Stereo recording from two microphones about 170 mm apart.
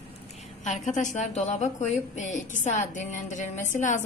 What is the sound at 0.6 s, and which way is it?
A woman's voice, 45° left (ahead or behind).